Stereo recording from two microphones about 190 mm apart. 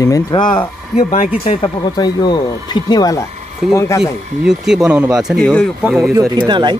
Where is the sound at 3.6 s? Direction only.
Centre (ahead or behind).